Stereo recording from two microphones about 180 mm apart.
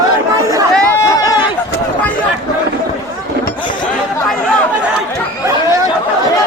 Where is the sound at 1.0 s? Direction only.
20° left (ahead or behind).